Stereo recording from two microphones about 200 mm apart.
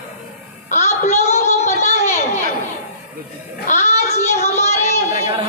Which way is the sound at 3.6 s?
35° left (ahead or behind).